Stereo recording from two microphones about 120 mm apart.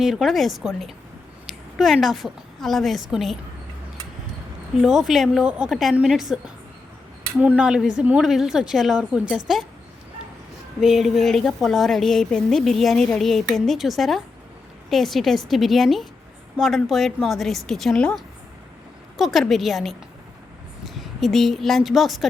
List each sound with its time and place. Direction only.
0.0 s a woman's voice: centre (ahead or behind)
4.8 s a woman's voice: 5° right (ahead or behind)
10.8 s a woman's voice: centre (ahead or behind)